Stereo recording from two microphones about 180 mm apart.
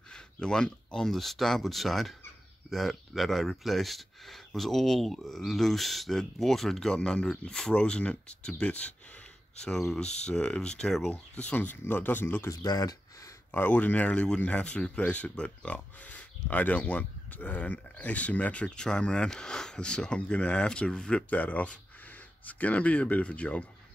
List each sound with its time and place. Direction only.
0.1 s speech: 5° left (ahead or behind); by 13.3 s 20° left (ahead or behind)
13.5 s speech: 10° left (ahead or behind)